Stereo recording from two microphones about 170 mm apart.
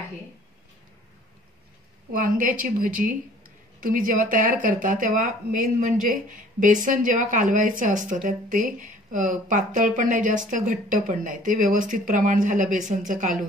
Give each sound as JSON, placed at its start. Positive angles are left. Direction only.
{"t": 2.1, "sound": "a woman's voice", "side_deg": -55}